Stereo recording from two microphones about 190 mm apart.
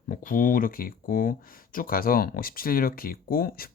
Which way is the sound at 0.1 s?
45° left (ahead or behind).